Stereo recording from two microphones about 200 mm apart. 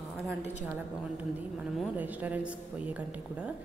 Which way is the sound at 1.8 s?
10° right (ahead or behind).